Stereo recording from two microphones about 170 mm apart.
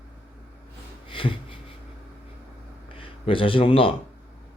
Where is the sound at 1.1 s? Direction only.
30° left (ahead or behind).